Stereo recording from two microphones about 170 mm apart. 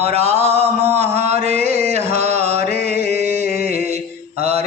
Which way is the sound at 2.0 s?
40° right (ahead or behind).